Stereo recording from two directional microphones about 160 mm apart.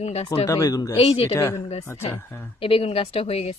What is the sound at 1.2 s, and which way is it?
Speech, 15° left (ahead or behind).